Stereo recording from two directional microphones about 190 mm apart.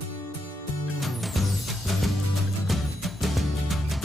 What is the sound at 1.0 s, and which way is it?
Music, centre (ahead or behind).